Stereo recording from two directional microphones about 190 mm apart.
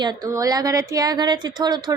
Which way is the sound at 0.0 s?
20° right (ahead or behind).